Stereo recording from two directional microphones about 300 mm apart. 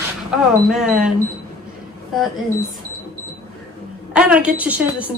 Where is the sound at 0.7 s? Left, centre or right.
Centre.